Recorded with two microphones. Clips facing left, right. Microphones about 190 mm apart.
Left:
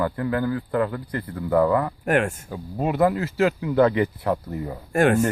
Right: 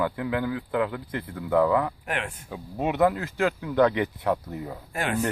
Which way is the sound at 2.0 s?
45° left (ahead or behind).